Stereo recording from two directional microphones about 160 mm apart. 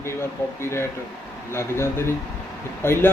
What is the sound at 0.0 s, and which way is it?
Speech, 15° left (ahead or behind).